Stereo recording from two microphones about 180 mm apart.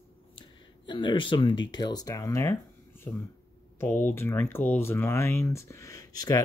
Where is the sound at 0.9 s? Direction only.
25° left (ahead or behind).